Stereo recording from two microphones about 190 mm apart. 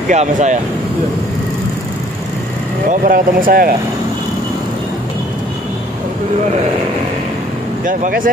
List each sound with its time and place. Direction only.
0.1 s speech: 40° right (ahead or behind)
2.9 s speech: 50° right (ahead or behind)
7.8 s speech: 45° right (ahead or behind)